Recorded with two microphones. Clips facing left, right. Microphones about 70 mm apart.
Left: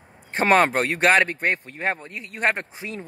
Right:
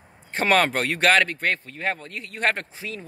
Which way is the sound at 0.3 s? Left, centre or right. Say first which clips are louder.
Left 2 dB; left.